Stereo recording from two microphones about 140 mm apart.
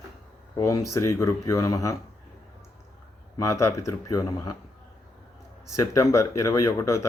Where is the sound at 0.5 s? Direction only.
20° left (ahead or behind).